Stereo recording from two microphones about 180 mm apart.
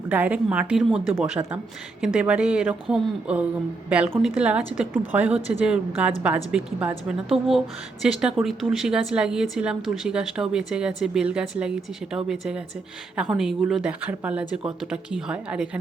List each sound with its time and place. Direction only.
0.1 s a woman's voice: 10° right (ahead or behind)
7.3 s speech: 30° right (ahead or behind)
8.0 s a woman's voice: 5° right (ahead or behind)